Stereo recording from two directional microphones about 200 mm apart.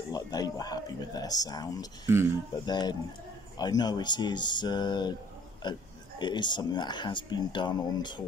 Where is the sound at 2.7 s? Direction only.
20° left (ahead or behind).